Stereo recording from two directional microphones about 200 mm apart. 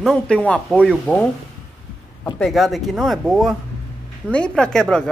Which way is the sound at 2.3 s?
Centre (ahead or behind).